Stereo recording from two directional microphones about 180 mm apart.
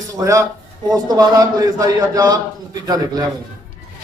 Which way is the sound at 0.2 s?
20° right (ahead or behind).